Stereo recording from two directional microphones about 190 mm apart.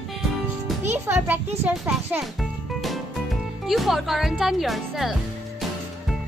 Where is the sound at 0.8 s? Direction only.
10° right (ahead or behind).